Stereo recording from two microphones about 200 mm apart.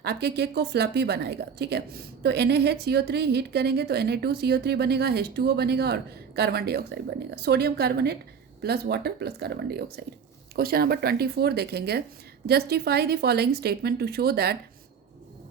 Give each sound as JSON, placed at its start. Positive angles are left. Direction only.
{"t": 0.0, "sound": "speech", "side_deg": -55}